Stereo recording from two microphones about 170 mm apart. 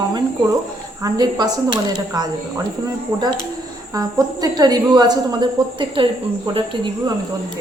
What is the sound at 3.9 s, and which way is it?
A woman's voice, 20° right (ahead or behind).